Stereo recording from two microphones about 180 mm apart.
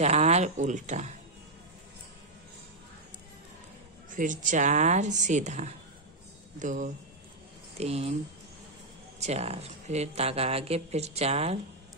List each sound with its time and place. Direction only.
0.0 s speech: 40° right (ahead or behind)
4.1 s a woman's voice: 45° right (ahead or behind)
9.2 s speech: 35° right (ahead or behind)